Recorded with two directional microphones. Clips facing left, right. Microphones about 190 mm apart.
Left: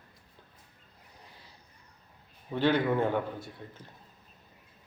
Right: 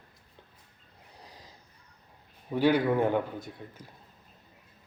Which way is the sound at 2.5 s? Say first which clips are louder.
Right 2 dB; 10° right (ahead or behind).